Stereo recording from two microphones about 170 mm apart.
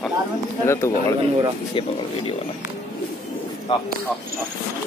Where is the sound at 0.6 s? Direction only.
15° left (ahead or behind).